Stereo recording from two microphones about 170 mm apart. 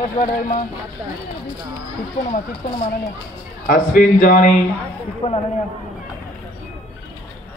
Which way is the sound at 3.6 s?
50° left (ahead or behind).